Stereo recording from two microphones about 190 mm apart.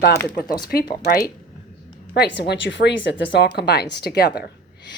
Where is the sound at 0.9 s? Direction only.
55° left (ahead or behind).